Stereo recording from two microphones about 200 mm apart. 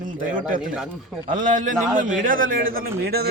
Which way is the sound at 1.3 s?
40° right (ahead or behind).